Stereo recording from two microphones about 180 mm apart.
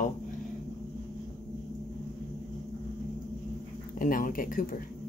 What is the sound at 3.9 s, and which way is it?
Speech, 50° left (ahead or behind).